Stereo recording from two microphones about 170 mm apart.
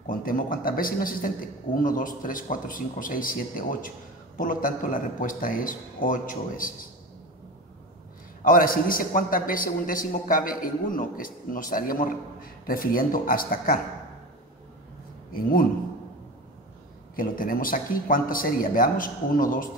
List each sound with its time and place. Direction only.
0.0 s a man's voice: 55° left (ahead or behind)
8.5 s a man's voice: 55° left (ahead or behind)
17.1 s a man's voice: 55° left (ahead or behind)